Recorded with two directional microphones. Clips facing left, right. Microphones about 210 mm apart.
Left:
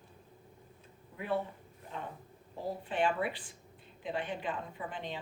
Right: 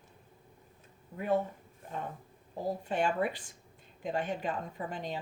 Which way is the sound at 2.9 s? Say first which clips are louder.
Right 1 dB; 45° right (ahead or behind).